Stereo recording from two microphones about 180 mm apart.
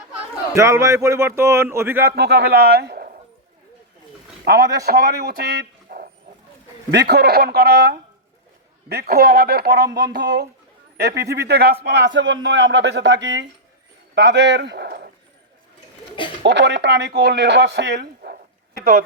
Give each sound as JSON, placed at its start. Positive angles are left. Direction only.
{"t": 0.5, "sound": "a man's voice", "side_deg": -15}
{"t": 2.0, "sound": "a man's voice", "side_deg": -65}
{"t": 4.4, "sound": "a man's voice", "side_deg": -65}
{"t": 16.4, "sound": "speech", "side_deg": -75}